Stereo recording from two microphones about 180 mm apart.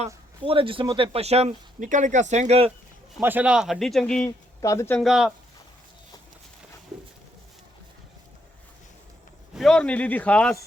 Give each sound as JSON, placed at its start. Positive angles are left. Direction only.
{"t": 0.4, "sound": "speech", "side_deg": -30}
{"t": 3.2, "sound": "speech", "side_deg": -10}
{"t": 4.3, "sound": "speech", "side_deg": 15}
{"t": 4.9, "sound": "speech", "side_deg": -5}
{"t": 9.6, "sound": "speech", "side_deg": 5}